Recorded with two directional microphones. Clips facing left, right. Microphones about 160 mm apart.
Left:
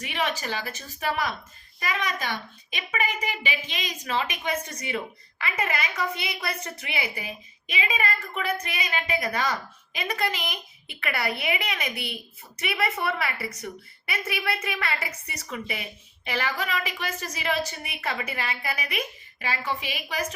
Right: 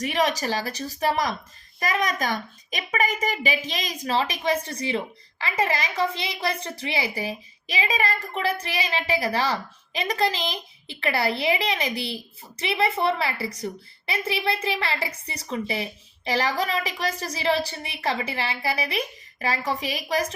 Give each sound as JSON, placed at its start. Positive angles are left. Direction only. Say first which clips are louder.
{"t": 0.0, "sound": "a child's voice", "louder": "right 5 dB", "side_deg": -40}